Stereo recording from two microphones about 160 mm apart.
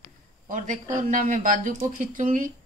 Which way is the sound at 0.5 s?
50° right (ahead or behind).